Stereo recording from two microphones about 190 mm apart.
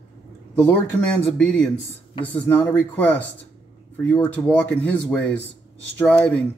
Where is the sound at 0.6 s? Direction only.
5° left (ahead or behind).